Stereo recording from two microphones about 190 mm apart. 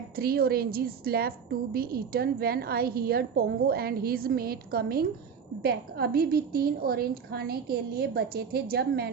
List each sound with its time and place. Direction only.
0.2 s a woman's voice: 55° right (ahead or behind)